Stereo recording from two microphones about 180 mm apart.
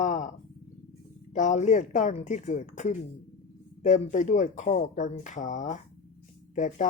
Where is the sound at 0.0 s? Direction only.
45° left (ahead or behind).